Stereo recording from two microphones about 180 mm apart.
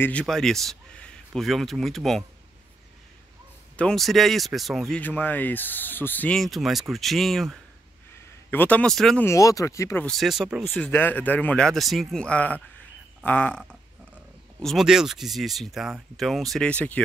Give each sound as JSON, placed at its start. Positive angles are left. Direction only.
{"t": 0.0, "sound": "a man's voice", "side_deg": 5}
{"t": 3.7, "sound": "speech", "side_deg": 5}
{"t": 9.2, "sound": "speech", "side_deg": 15}
{"t": 10.0, "sound": "speech", "side_deg": 0}
{"t": 10.9, "sound": "speech", "side_deg": 10}